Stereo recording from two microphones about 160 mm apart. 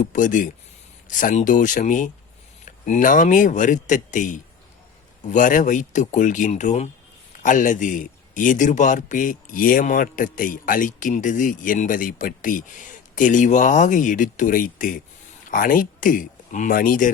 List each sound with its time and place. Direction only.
0.0 s a man's voice: 55° left (ahead or behind)